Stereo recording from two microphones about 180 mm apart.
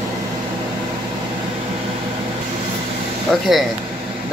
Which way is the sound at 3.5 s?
Centre (ahead or behind).